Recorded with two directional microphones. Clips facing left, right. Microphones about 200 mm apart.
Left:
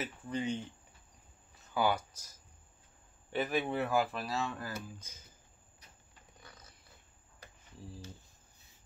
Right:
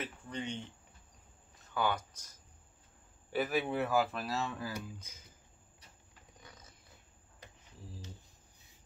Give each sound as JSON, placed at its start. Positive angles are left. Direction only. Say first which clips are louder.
{"t": 0.0, "sound": "speech", "louder": "left 4 dB", "side_deg": 5}
{"t": 1.7, "sound": "speech", "louder": "left 3 dB", "side_deg": 10}
{"t": 3.3, "sound": "speech", "louder": "even", "side_deg": -5}
{"t": 6.4, "sound": "a sound", "louder": "even", "side_deg": -20}